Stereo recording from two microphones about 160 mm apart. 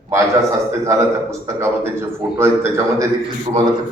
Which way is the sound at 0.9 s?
20° right (ahead or behind).